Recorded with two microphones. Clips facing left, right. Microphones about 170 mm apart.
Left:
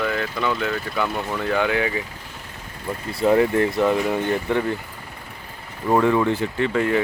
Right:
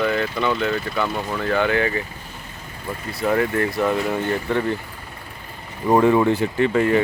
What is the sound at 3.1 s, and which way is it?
Speech, 25° left (ahead or behind).